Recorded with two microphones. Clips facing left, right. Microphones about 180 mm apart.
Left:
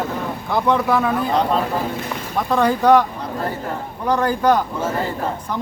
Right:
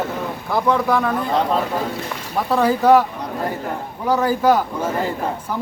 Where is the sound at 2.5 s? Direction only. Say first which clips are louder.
Even; 5° right (ahead or behind).